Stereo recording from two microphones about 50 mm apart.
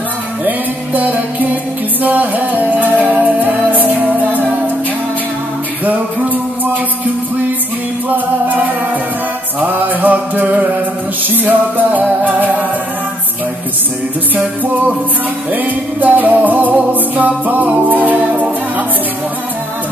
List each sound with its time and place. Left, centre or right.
0.5 s music: right
5.9 s music: right
8.1 s music: right
15.5 s music: right